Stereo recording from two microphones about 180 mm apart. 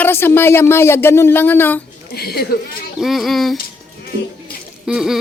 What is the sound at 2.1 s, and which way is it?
Speech, 60° left (ahead or behind).